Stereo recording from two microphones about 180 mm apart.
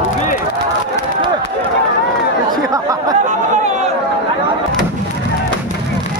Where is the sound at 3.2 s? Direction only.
40° right (ahead or behind).